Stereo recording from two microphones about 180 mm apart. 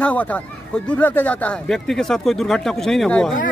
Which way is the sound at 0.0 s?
10° left (ahead or behind).